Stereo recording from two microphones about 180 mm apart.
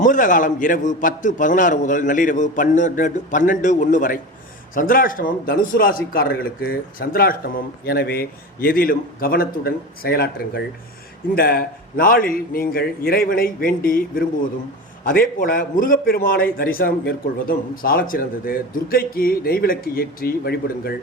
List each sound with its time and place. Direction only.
0.0 s a man's voice: 45° left (ahead or behind)